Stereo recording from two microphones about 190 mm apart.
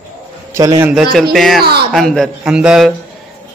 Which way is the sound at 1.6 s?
55° right (ahead or behind).